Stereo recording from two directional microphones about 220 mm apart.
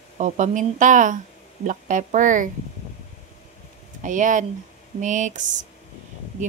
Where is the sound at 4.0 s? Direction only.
35° right (ahead or behind).